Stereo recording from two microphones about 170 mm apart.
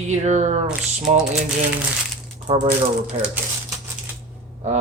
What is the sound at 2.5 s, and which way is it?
Speech, 35° right (ahead or behind).